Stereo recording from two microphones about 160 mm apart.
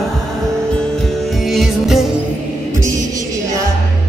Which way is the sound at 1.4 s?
Centre (ahead or behind).